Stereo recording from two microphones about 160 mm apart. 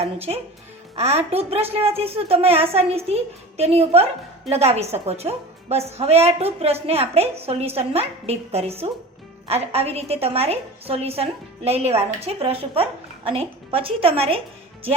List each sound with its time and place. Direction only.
0.0 s a woman's voice: 40° right (ahead or behind)